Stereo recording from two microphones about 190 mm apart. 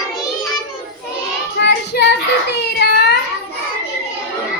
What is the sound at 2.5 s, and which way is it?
Baby cry, 65° left (ahead or behind).